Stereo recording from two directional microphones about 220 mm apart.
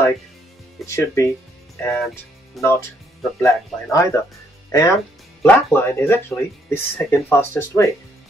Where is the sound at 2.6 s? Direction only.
Centre (ahead or behind).